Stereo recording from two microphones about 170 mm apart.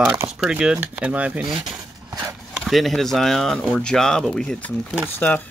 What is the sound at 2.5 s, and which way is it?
Speech, centre (ahead or behind).